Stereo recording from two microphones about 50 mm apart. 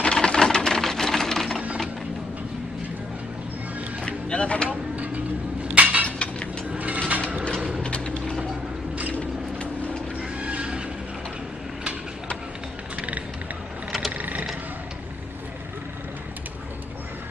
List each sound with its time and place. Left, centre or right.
0.0 s sewing machine: centre
4.0 s music: left
4.6 s vehicle: right
5.8 s a sound: right
6.0 s a sound: left
6.7 s mechanisms: right
7.8 s mechanisms: centre
10.4 s neigh: right
14.1 s a sound: right